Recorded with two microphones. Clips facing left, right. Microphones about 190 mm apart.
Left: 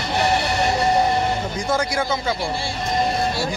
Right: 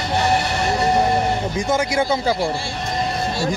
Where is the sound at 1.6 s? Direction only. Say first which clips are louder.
Right 3 dB; 20° right (ahead or behind).